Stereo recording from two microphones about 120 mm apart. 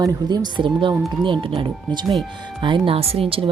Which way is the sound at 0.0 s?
30° right (ahead or behind).